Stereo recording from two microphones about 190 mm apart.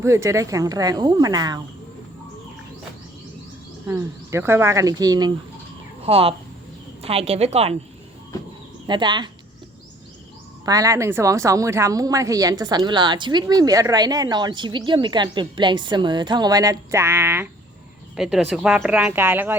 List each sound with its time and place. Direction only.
0.0 s speech: 15° right (ahead or behind)
3.8 s speech: 15° right (ahead or behind)
6.1 s a woman's voice: 30° right (ahead or behind)
8.9 s speech: 25° right (ahead or behind)
10.7 s speech: 15° right (ahead or behind)